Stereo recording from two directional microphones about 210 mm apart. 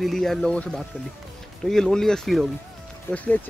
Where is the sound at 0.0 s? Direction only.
Centre (ahead or behind).